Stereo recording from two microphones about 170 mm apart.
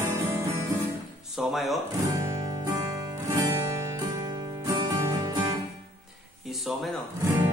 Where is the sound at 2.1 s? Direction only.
20° right (ahead or behind).